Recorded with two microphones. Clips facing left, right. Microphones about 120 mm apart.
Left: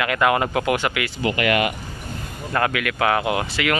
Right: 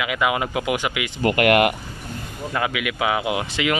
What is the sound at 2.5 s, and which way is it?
Speech, 5° right (ahead or behind).